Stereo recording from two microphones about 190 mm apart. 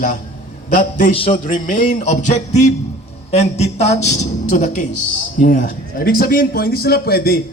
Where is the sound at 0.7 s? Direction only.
45° left (ahead or behind).